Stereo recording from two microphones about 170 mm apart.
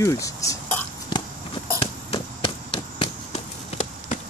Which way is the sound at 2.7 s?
30° left (ahead or behind).